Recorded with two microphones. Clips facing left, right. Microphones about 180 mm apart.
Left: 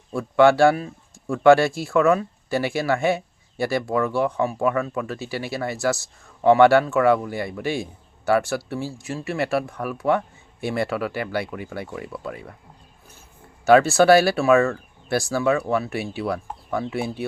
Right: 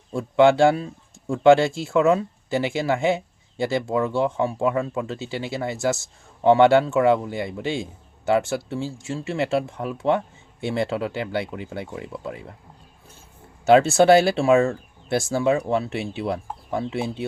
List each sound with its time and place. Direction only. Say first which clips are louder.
0.1 s speech: even; 20° right (ahead or behind)
13.7 s speech: even; 25° right (ahead or behind)